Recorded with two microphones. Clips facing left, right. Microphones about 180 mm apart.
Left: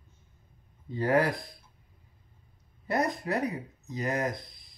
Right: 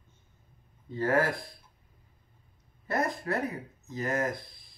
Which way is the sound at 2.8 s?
15° left (ahead or behind).